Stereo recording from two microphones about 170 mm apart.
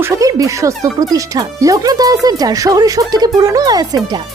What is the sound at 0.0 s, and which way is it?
Speech, 20° right (ahead or behind).